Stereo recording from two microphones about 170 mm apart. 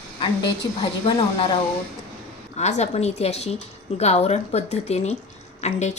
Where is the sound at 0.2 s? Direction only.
30° left (ahead or behind).